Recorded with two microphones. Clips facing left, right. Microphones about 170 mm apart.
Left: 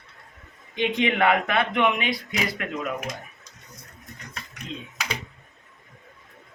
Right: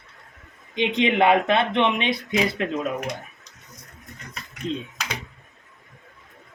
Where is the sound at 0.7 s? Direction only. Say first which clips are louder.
Right 2 dB; 20° right (ahead or behind).